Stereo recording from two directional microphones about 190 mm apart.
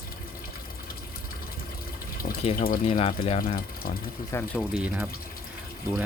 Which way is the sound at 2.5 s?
50° left (ahead or behind).